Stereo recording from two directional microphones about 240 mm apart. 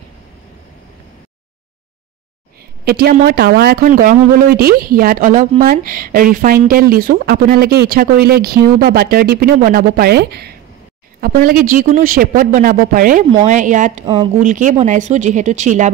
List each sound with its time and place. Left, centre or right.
2.8 s speech: right
14.0 s speech: centre
14.3 s speech: right